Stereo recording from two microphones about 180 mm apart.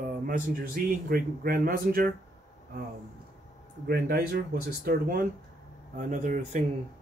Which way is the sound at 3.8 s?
60° right (ahead or behind).